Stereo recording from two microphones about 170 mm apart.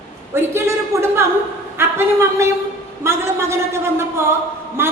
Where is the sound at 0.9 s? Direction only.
15° right (ahead or behind).